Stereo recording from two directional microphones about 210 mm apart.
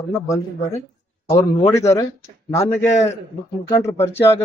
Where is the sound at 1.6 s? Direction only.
15° left (ahead or behind).